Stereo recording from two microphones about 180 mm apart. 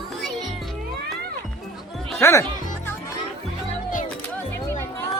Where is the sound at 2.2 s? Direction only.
15° left (ahead or behind).